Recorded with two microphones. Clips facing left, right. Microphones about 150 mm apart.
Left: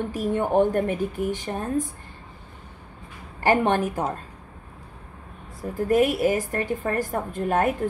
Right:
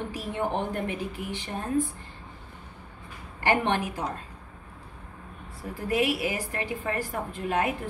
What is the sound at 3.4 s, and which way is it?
Speech, 45° left (ahead or behind).